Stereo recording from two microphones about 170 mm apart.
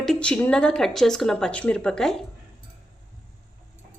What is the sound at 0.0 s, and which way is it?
A woman's voice, 5° left (ahead or behind).